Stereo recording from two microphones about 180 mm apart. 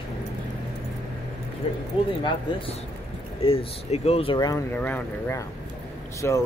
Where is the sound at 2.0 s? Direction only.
30° left (ahead or behind).